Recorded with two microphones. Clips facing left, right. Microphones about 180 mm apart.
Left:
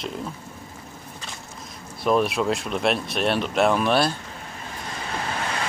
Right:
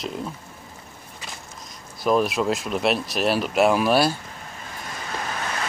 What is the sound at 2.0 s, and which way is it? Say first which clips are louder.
Speech: even; centre (ahead or behind).